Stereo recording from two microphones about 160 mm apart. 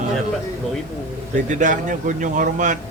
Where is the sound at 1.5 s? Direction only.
50° right (ahead or behind).